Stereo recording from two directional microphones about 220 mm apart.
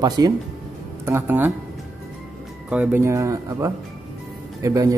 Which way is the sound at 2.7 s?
10° right (ahead or behind).